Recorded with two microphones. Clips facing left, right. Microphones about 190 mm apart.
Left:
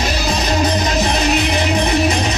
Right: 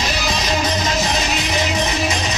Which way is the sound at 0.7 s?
60° left (ahead or behind).